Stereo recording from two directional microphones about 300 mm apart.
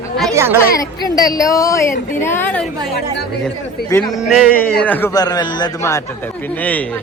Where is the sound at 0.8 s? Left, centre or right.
Centre.